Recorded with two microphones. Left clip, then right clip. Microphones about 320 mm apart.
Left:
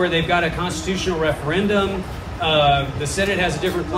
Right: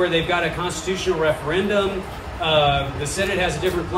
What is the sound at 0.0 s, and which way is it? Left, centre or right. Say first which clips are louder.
A man's voice: left 1 dB; left.